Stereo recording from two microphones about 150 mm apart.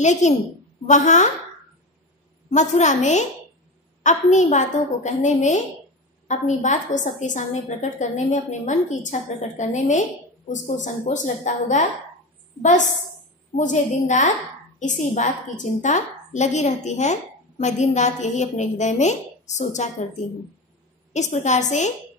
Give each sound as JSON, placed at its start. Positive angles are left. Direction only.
{"t": 0.0, "sound": "a woman's voice", "side_deg": 50}
{"t": 2.5, "sound": "a woman's voice", "side_deg": 50}
{"t": 21.1, "sound": "a woman's voice", "side_deg": 50}